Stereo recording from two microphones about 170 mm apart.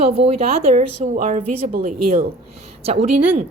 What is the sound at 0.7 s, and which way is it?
A woman's voice, 50° right (ahead or behind).